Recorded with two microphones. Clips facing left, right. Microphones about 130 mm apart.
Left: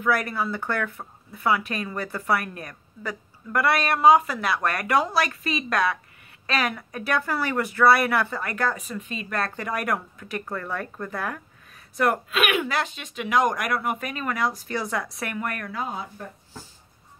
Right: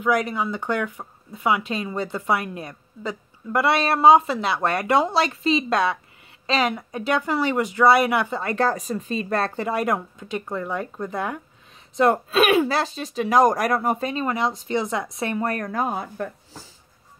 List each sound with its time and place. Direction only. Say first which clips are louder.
0.0 s speech: right 3 dB; 20° right (ahead or behind); by 15.7 s 35° right (ahead or behind)
15.7 s speech: right 6 dB; 50° right (ahead or behind)